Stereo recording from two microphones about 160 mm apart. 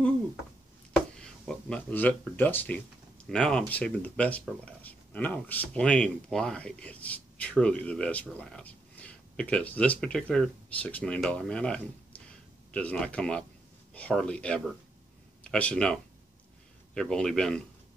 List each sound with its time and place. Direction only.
1.1 s a man's voice: 5° left (ahead or behind)